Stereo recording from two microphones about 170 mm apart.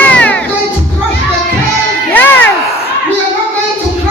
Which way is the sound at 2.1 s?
10° left (ahead or behind).